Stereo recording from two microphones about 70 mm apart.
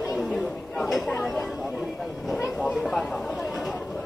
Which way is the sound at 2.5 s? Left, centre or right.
Centre.